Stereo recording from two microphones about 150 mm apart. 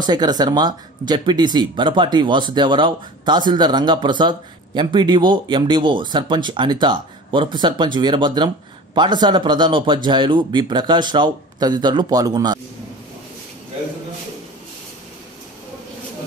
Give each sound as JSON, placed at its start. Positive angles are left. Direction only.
{"t": 0.0, "sound": "speech", "side_deg": -30}